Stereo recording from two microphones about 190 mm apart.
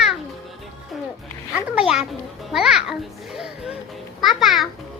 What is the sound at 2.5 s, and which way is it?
Music, 5° right (ahead or behind).